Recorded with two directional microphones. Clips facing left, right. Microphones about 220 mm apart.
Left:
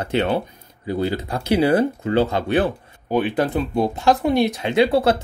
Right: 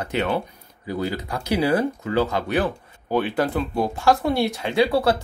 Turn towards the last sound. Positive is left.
turn(degrees=20)  # may be behind; listen again after turning